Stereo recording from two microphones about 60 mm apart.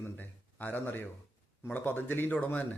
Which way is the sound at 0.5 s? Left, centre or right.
Left.